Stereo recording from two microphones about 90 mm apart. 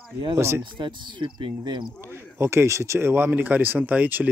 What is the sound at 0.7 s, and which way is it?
Speech, 60° right (ahead or behind).